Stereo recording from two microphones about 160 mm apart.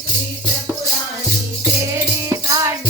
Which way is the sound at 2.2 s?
20° right (ahead or behind).